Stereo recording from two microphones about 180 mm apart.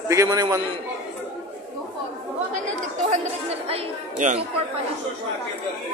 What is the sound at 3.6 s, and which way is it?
Speech, 35° right (ahead or behind).